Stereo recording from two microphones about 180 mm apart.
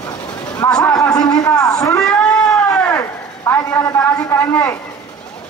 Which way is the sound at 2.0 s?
5° left (ahead or behind).